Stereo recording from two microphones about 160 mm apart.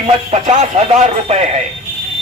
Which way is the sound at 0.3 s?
40° right (ahead or behind).